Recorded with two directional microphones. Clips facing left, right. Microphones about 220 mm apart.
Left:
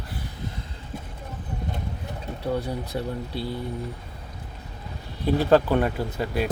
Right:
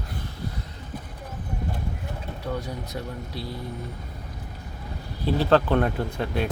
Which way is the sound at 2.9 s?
25° left (ahead or behind).